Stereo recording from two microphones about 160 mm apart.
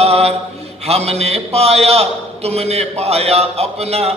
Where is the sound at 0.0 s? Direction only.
40° right (ahead or behind).